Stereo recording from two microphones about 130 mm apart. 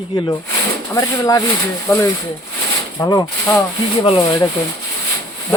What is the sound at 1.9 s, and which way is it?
Speech, 15° left (ahead or behind).